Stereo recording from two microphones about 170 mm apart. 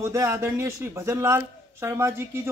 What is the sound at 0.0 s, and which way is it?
Speech, 15° right (ahead or behind).